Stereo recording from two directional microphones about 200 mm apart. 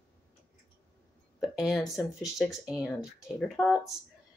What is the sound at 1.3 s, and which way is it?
Speech, centre (ahead or behind).